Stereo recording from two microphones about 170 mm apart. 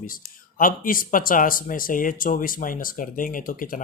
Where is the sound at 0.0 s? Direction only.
55° left (ahead or behind).